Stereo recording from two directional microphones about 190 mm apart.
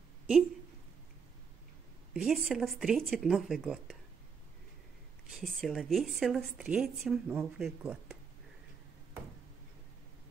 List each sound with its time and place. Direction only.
2.1 s a woman's voice: 5° right (ahead or behind)
5.3 s a woman's voice: centre (ahead or behind)